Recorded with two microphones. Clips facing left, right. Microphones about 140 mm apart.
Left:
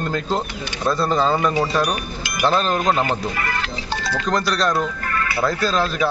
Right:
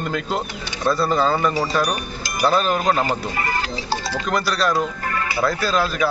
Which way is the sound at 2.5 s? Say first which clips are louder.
Even; 5° right (ahead or behind).